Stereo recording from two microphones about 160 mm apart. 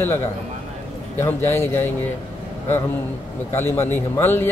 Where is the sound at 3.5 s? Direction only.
15° left (ahead or behind).